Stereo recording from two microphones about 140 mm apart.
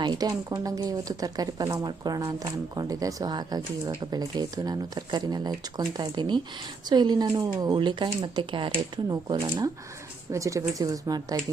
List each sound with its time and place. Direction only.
0.0 s speech: 30° right (ahead or behind)